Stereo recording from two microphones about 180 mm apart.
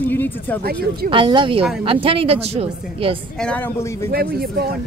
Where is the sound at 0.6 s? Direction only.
60° right (ahead or behind).